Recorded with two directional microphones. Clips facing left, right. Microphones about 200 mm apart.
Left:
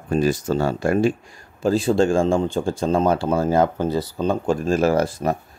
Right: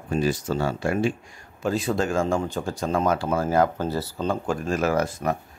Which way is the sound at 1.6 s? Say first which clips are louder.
Left 6 dB; 30° left (ahead or behind).